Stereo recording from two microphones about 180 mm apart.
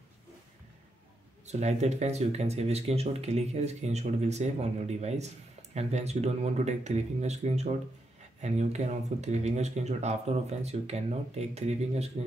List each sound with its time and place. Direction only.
1.4 s speech: 40° right (ahead or behind)